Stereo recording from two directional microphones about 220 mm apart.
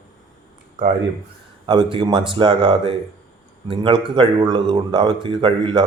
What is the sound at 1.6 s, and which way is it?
A man's voice, 20° right (ahead or behind).